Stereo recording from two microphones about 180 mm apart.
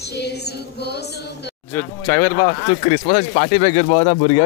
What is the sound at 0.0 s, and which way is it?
Speech, 70° left (ahead or behind).